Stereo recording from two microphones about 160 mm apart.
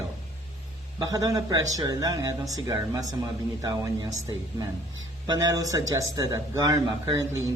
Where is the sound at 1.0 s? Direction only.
25° right (ahead or behind).